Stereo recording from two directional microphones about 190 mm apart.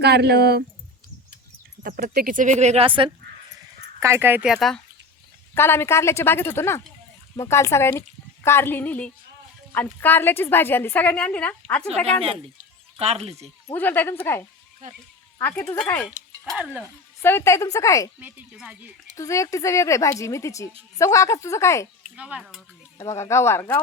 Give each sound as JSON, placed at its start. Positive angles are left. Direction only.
{"t": 0.0, "sound": "speech", "side_deg": -60}
{"t": 1.8, "sound": "speech", "side_deg": -45}
{"t": 4.0, "sound": "speech", "side_deg": -15}
{"t": 5.5, "sound": "a woman's voice", "side_deg": 10}
{"t": 13.0, "sound": "speech", "side_deg": -30}
{"t": 13.7, "sound": "a woman's voice", "side_deg": 10}
{"t": 17.2, "sound": "a woman's voice", "side_deg": 15}
{"t": 18.2, "sound": "speech", "side_deg": -10}
{"t": 19.1, "sound": "a woman's voice", "side_deg": 15}
{"t": 22.1, "sound": "cutlery", "side_deg": -5}
{"t": 23.0, "sound": "a woman's voice", "side_deg": 15}